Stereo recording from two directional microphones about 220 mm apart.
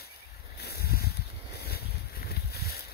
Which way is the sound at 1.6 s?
45° left (ahead or behind).